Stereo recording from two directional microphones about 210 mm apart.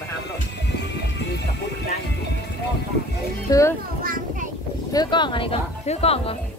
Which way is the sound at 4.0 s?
45° right (ahead or behind).